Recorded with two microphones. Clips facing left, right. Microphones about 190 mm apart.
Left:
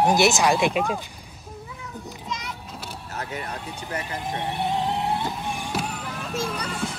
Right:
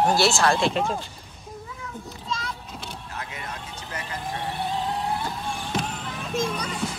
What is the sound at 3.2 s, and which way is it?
Vehicle, 40° left (ahead or behind).